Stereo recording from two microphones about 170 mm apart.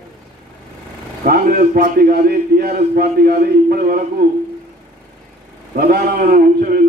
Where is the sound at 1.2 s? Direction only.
60° right (ahead or behind).